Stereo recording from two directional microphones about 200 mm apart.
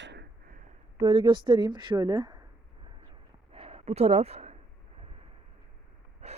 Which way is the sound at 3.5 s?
30° right (ahead or behind).